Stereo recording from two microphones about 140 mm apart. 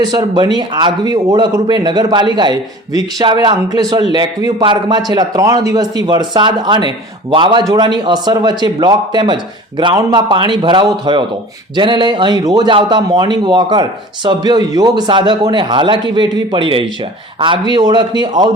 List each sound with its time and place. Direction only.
0.0 s a man's voice: 25° right (ahead or behind)